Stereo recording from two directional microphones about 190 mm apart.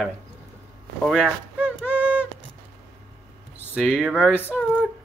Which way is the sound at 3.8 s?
5° right (ahead or behind).